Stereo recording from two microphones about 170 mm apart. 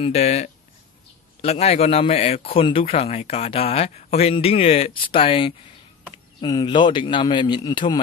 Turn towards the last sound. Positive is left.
turn(degrees=25)  # may be behind; listen again after turning